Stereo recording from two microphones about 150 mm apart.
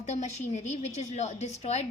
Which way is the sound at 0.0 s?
50° left (ahead or behind).